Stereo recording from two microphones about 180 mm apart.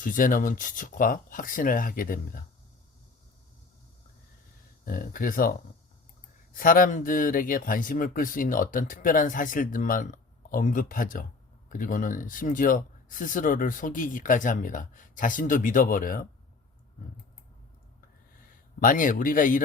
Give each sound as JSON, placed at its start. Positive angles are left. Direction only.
{"t": 0.0, "sound": "speech", "side_deg": 50}
{"t": 4.9, "sound": "speech", "side_deg": 50}
{"t": 18.8, "sound": "speech", "side_deg": 50}